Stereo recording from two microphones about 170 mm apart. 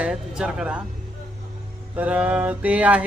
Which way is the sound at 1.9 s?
10° right (ahead or behind).